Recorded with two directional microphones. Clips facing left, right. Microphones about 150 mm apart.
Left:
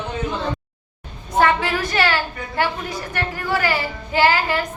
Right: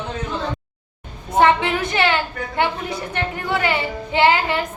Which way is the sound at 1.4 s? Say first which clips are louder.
Right 2 dB; 20° right (ahead or behind).